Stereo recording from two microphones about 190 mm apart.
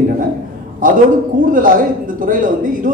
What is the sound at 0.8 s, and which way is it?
Speech, 45° right (ahead or behind).